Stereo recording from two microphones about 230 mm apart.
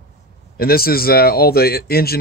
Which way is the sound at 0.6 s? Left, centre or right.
Left.